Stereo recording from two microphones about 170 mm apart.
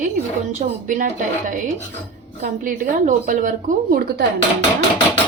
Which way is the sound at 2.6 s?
50° right (ahead or behind).